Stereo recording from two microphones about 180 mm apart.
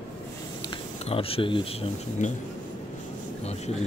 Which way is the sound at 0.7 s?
30° left (ahead or behind).